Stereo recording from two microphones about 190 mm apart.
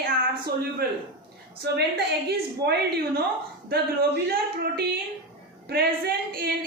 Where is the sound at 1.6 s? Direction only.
60° right (ahead or behind).